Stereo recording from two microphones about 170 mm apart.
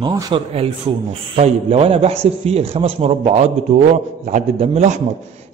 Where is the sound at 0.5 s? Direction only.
35° right (ahead or behind).